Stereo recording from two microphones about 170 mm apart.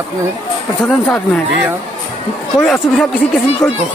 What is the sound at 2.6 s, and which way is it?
A woman's voice, 10° left (ahead or behind).